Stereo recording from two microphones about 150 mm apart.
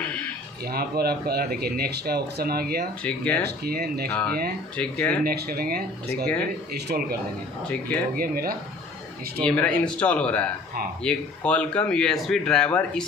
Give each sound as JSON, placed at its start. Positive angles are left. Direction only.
{"t": 0.0, "sound": "a sound", "side_deg": 10}
{"t": 0.7, "sound": "speech", "side_deg": -90}
{"t": 3.0, "sound": "speech", "side_deg": 10}
{"t": 3.4, "sound": "speech", "side_deg": -90}
{"t": 4.1, "sound": "speech", "side_deg": 10}
{"t": 5.2, "sound": "speech", "side_deg": -90}
{"t": 7.6, "sound": "speech", "side_deg": 10}
{"t": 8.2, "sound": "speech", "side_deg": -80}
{"t": 9.4, "sound": "speech", "side_deg": 10}